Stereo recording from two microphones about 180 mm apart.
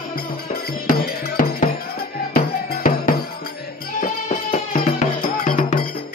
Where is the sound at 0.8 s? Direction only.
55° left (ahead or behind).